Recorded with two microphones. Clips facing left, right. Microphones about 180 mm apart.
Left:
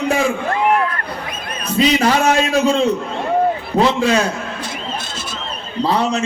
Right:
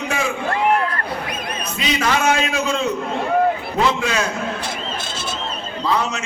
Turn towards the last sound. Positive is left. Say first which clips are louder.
# left 4 dB
turn(degrees=35)  # may be behind; listen again after turning